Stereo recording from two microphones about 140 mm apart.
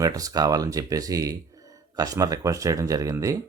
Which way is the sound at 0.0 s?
25° right (ahead or behind).